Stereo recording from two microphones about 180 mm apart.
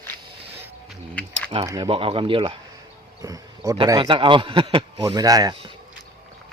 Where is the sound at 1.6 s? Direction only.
20° right (ahead or behind).